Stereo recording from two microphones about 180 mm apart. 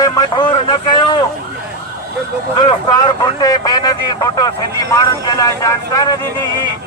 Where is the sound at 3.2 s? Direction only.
25° left (ahead or behind).